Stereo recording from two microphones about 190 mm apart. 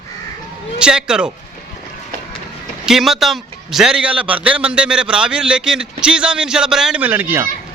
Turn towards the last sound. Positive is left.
turn(degrees=-10)  # may be behind; listen again after turning